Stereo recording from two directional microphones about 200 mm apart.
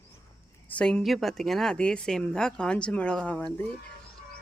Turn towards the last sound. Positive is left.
turn(degrees=5)  # may be behind; listen again after turning